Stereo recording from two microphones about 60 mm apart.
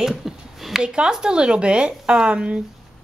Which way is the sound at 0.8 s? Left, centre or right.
Centre.